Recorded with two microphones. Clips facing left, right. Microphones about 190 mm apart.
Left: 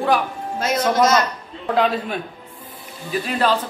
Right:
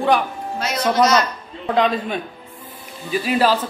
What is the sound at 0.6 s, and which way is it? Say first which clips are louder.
Speech: even; 50° left (ahead or behind).